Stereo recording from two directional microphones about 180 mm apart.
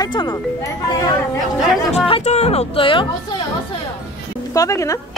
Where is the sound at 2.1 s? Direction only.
35° left (ahead or behind).